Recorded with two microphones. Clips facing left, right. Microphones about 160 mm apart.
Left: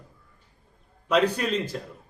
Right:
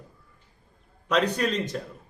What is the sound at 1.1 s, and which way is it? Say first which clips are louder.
Speech: left 1 dB; 5° left (ahead or behind).